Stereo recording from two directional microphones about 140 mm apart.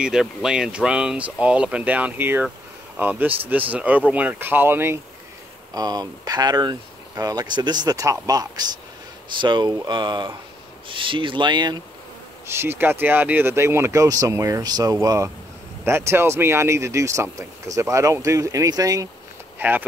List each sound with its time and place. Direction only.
0.0 s speech: 5° right (ahead or behind)
5.8 s speech: 25° right (ahead or behind)
12.4 s speech: 15° right (ahead or behind)
19.6 s speech: 15° right (ahead or behind)